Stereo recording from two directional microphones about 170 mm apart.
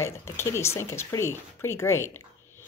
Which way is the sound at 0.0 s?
15° left (ahead or behind).